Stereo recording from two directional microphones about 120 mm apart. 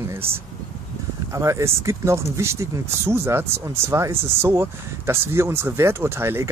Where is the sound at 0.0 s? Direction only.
20° right (ahead or behind).